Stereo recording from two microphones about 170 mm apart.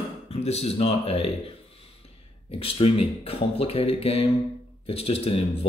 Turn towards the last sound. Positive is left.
turn(degrees=35)  # may be behind; listen again after turning